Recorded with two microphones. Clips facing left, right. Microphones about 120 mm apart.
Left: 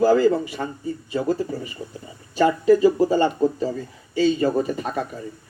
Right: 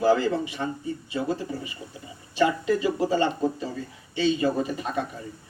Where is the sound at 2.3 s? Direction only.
40° left (ahead or behind).